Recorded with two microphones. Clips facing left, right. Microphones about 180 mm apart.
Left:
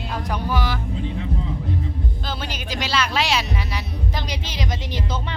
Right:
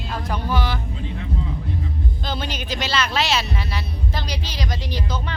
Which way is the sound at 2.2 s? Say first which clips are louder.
Right 2 dB; 5° left (ahead or behind).